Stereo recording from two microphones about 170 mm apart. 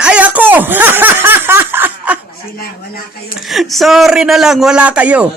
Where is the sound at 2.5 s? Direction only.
60° left (ahead or behind).